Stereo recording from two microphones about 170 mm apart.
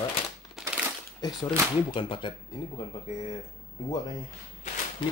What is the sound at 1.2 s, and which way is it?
Speech, 25° left (ahead or behind).